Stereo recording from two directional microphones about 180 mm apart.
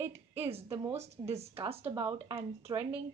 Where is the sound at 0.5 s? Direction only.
35° right (ahead or behind).